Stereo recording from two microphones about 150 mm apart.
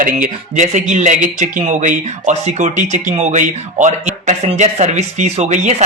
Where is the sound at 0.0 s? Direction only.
60° right (ahead or behind).